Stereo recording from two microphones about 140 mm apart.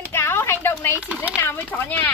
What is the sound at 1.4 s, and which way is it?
Speech, 15° left (ahead or behind).